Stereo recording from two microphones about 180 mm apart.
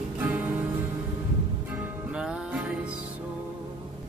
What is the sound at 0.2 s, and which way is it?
Music, 10° right (ahead or behind).